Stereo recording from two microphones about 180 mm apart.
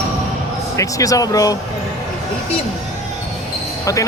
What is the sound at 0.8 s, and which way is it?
Speech, 20° left (ahead or behind).